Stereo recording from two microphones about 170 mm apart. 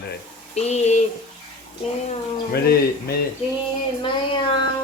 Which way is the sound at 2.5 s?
65° left (ahead or behind).